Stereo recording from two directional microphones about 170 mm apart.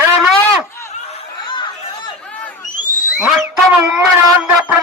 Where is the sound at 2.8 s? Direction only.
50° left (ahead or behind).